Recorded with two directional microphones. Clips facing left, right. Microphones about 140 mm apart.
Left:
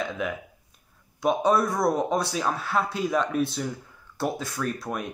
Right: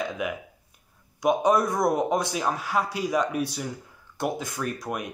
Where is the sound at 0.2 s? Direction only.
15° right (ahead or behind).